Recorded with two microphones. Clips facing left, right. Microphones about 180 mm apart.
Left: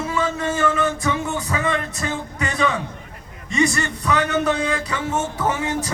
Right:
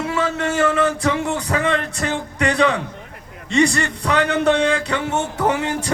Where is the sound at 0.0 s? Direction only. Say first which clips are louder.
Right 2 dB; 75° right (ahead or behind).